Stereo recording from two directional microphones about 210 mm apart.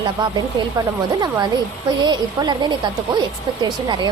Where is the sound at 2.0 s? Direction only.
20° right (ahead or behind).